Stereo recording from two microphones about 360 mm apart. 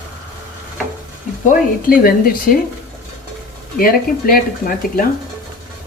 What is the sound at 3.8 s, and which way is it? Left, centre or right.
Speech, left.